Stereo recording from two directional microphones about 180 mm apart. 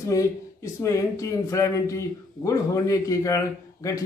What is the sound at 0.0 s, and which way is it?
Speech, 15° left (ahead or behind).